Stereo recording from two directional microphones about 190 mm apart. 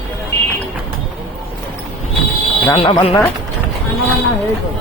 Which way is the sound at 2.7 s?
30° left (ahead or behind).